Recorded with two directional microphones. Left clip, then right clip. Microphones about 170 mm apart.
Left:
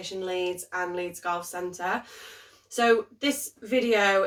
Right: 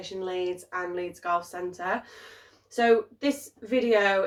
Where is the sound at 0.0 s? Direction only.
15° left (ahead or behind).